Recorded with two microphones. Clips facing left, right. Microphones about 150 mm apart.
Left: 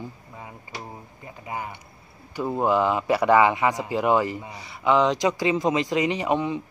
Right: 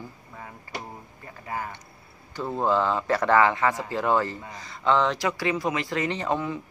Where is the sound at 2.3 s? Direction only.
15° left (ahead or behind).